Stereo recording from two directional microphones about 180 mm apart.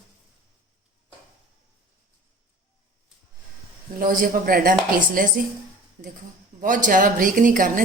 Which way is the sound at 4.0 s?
50° right (ahead or behind).